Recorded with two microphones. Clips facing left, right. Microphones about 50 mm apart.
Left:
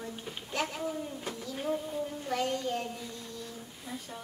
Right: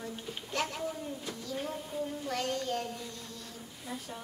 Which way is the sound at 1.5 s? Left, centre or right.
Centre.